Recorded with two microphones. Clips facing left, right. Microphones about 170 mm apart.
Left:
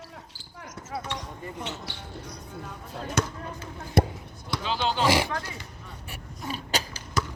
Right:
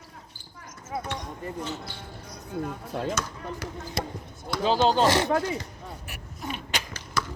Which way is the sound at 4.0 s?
55° left (ahead or behind).